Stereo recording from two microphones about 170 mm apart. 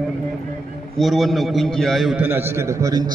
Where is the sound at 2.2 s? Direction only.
15° right (ahead or behind).